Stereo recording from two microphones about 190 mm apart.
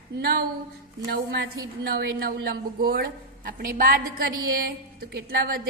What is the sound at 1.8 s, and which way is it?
A woman's voice, 55° right (ahead or behind).